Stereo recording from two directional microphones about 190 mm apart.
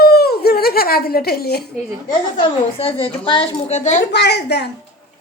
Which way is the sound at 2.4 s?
30° left (ahead or behind).